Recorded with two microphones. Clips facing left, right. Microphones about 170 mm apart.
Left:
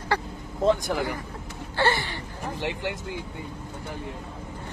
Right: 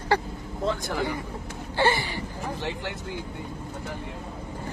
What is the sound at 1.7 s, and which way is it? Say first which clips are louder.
Speech: right 1 dB; 15° right (ahead or behind).